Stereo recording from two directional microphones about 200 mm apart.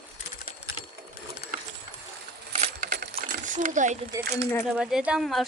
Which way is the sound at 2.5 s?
40° right (ahead or behind).